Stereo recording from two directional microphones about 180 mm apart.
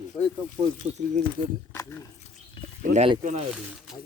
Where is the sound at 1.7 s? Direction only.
15° left (ahead or behind).